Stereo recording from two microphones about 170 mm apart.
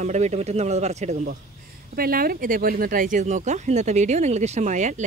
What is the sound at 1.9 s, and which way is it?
Speech, 60° right (ahead or behind).